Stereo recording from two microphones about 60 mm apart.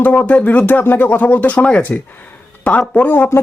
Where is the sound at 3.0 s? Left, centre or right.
Left.